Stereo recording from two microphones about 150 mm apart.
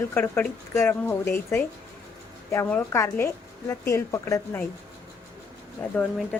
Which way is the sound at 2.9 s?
20° left (ahead or behind).